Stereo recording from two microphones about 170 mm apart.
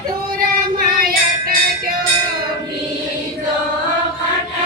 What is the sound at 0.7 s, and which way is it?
Child singing, 60° right (ahead or behind).